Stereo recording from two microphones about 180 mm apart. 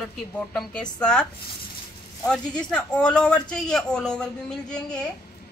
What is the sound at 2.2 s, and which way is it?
Speech, 5° left (ahead or behind).